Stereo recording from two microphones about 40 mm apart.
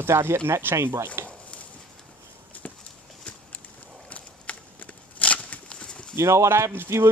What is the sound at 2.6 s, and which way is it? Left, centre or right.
Horse, left.